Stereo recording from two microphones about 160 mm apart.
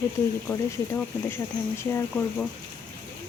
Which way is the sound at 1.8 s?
15° left (ahead or behind).